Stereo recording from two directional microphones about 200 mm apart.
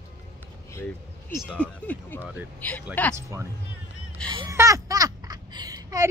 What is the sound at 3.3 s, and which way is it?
Speech, 15° right (ahead or behind).